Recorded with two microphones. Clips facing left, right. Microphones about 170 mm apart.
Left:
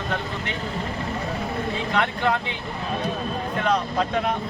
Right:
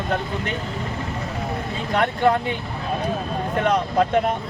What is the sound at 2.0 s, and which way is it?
Speech, 50° right (ahead or behind).